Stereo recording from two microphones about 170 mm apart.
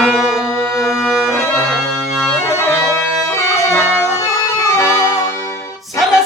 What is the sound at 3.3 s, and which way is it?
Music, 15° left (ahead or behind).